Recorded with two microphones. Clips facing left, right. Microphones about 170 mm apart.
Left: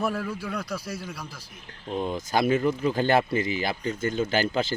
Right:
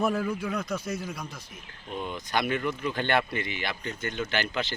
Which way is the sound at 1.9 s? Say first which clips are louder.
Left 5 dB; 35° left (ahead or behind).